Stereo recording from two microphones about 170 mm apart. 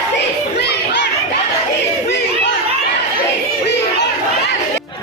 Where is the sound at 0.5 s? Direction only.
75° left (ahead or behind).